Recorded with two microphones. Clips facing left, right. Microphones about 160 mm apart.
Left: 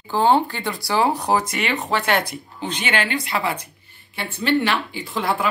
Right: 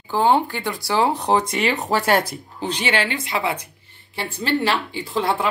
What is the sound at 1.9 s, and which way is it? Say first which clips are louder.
A woman's voice: right 2 dB; 40° right (ahead or behind).